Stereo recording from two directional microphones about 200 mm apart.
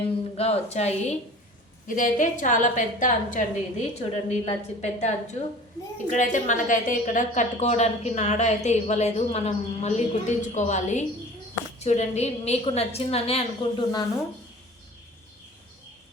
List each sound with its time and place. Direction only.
0.0 s a woman's voice: 30° left (ahead or behind)